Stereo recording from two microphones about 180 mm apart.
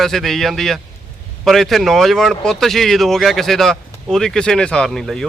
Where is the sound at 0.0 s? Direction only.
Centre (ahead or behind).